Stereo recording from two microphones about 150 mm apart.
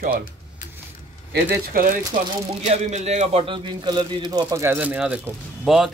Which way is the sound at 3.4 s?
30° right (ahead or behind).